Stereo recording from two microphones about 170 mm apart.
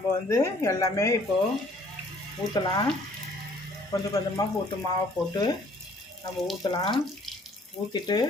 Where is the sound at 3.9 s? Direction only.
20° left (ahead or behind).